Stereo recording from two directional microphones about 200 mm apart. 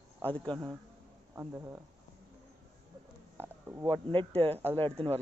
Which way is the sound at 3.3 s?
10° right (ahead or behind).